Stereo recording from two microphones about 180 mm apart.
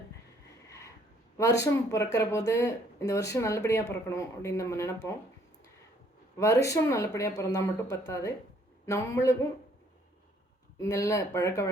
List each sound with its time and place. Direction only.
1.6 s speech: 15° left (ahead or behind)
6.4 s speech: 15° left (ahead or behind)
10.8 s speech: 15° left (ahead or behind)